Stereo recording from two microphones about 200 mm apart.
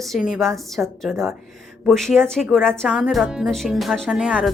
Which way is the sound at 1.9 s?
Centre (ahead or behind).